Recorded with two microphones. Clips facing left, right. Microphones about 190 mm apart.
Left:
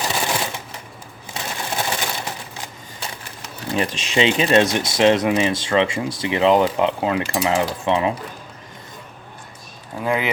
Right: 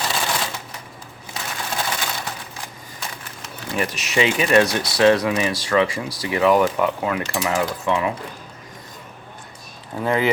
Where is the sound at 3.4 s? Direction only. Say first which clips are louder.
Left 2 dB; 30° left (ahead or behind).